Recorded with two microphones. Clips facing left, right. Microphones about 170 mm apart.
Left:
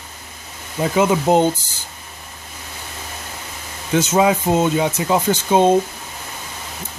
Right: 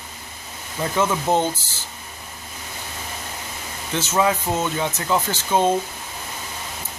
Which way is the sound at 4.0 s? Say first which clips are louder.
Left 5 dB; 15° left (ahead or behind).